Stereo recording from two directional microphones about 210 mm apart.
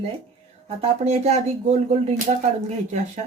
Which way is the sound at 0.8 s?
30° right (ahead or behind).